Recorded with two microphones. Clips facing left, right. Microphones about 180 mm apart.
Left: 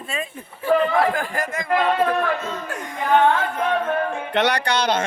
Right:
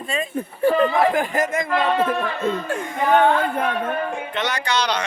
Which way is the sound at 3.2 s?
60° right (ahead or behind).